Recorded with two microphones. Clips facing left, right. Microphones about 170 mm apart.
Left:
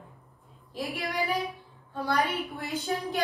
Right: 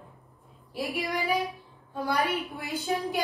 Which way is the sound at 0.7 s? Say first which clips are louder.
Right 2 dB; 10° right (ahead or behind).